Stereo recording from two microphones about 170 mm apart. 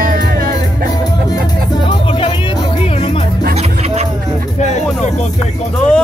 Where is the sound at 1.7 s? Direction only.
30° left (ahead or behind).